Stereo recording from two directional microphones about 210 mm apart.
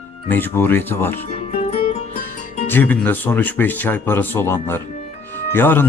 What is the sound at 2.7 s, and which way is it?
Speech, 10° left (ahead or behind).